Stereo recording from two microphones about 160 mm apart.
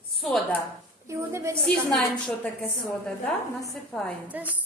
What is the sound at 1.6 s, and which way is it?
Speech, 5° left (ahead or behind).